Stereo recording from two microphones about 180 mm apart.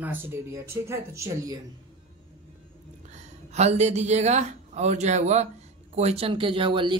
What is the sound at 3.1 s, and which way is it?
Speech, 40° right (ahead or behind).